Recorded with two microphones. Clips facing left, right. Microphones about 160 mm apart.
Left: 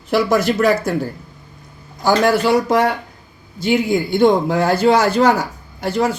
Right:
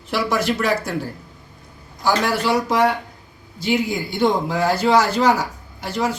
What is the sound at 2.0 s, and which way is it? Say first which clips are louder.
A man's voice: left 5 dB; 50° left (ahead or behind).